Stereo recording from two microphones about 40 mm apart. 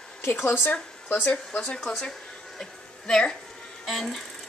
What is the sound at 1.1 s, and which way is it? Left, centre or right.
Speech, left.